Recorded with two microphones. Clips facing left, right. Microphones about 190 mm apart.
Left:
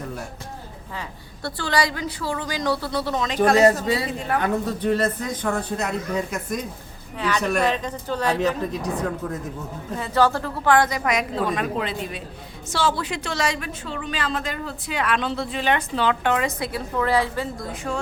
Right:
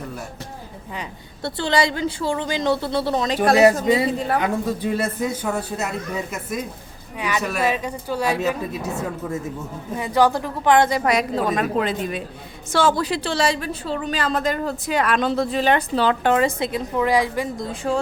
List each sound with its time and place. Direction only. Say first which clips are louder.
1.5 s a woman's voice: right 3 dB; 25° right (ahead or behind)
3.6 s a man's voice: right 3 dB; 15° right (ahead or behind)
7.2 s a man's voice: left 1 dB; 15° right (ahead or behind)
7.4 s a man's voice: even; 5° right (ahead or behind); by 12.2 s 45° right (ahead or behind)
13.0 s a woman's voice: right 5 dB; 35° right (ahead or behind); by 17.7 s 15° right (ahead or behind)
17.7 s a woman's voice: right 5 dB; 30° right (ahead or behind)